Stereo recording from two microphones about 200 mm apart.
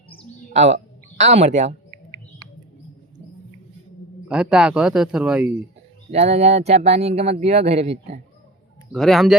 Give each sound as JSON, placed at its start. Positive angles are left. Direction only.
{"t": 0.5, "sound": "speech", "side_deg": -35}
{"t": 4.3, "sound": "speech", "side_deg": -5}
{"t": 6.1, "sound": "speech", "side_deg": -30}
{"t": 8.9, "sound": "speech", "side_deg": 0}